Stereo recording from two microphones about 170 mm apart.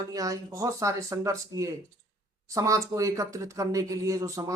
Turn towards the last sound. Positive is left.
turn(degrees=-20)  # may be behind; listen again after turning